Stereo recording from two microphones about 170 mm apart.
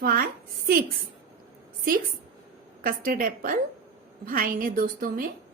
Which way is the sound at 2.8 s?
55° right (ahead or behind).